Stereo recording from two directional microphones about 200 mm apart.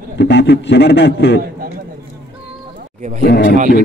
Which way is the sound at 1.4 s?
45° right (ahead or behind).